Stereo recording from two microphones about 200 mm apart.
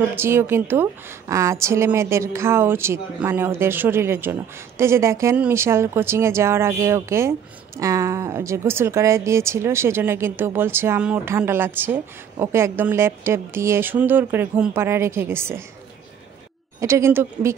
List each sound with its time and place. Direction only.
0.1 s speech: 10° right (ahead or behind)
16.8 s speech: 15° right (ahead or behind)